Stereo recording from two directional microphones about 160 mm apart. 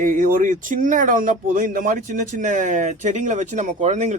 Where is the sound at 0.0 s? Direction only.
60° right (ahead or behind).